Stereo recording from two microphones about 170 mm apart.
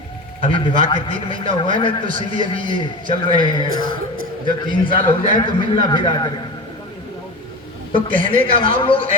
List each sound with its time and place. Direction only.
0.4 s a man's voice: 30° left (ahead or behind)
7.9 s a man's voice: 30° left (ahead or behind)